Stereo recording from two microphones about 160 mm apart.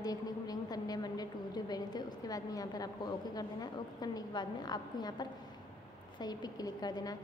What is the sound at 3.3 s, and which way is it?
A woman's voice, 25° left (ahead or behind).